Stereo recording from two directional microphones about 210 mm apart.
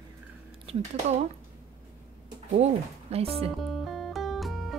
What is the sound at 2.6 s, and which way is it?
Speech, 30° right (ahead or behind).